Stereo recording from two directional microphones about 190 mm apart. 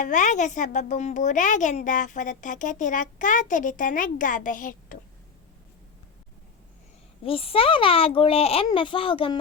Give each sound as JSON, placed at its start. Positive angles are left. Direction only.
{"t": 0.0, "sound": "a woman's voice", "side_deg": 40}
{"t": 7.3, "sound": "a child's voice", "side_deg": 30}